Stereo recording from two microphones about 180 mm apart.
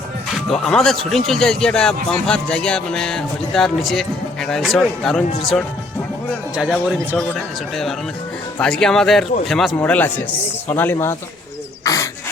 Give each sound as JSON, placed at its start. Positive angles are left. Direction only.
{"t": 0.5, "sound": "a man's voice", "side_deg": 5}
{"t": 11.8, "sound": "bird", "side_deg": 20}